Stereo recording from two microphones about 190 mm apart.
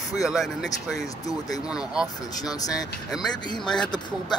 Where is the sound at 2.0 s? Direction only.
20° left (ahead or behind).